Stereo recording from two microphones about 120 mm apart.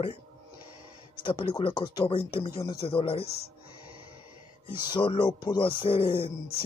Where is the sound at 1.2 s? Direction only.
45° left (ahead or behind).